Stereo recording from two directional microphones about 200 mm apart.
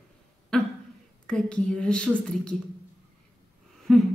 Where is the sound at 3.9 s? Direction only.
Centre (ahead or behind).